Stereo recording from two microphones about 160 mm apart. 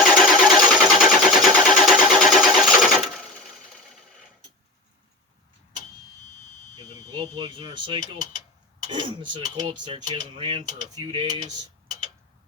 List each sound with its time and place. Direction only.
0.0 s a sound: centre (ahead or behind)
2.1 s sewing machine: centre (ahead or behind)
7.2 s speech: 35° right (ahead or behind)